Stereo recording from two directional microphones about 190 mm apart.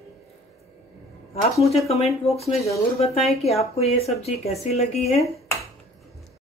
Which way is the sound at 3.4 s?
35° left (ahead or behind).